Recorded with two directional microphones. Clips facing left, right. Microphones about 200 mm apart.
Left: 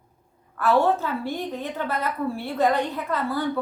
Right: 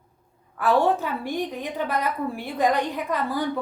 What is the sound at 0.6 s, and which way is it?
A woman's voice, 15° right (ahead or behind).